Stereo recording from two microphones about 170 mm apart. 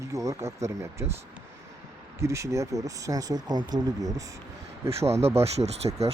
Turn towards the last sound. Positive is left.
turn(degrees=-35)  # may be behind; listen again after turning